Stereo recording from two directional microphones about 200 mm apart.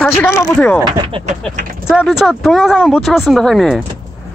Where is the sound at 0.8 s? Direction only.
20° right (ahead or behind).